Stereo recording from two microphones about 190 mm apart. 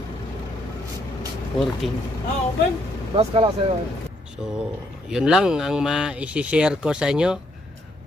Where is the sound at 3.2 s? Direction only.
30° right (ahead or behind).